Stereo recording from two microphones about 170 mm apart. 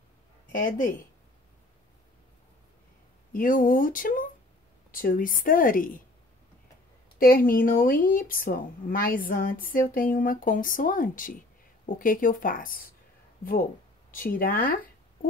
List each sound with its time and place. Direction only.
0.5 s speech: 50° left (ahead or behind)
3.3 s speech: 55° left (ahead or behind)
7.2 s speech: 60° left (ahead or behind)